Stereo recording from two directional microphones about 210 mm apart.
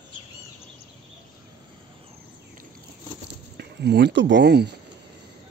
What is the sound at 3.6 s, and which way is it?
Speech, 55° right (ahead or behind).